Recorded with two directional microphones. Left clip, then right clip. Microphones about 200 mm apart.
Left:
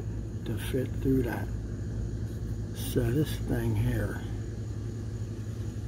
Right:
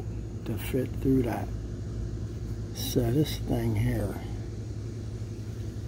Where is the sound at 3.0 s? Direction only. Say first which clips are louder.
Right 2 dB; 20° right (ahead or behind).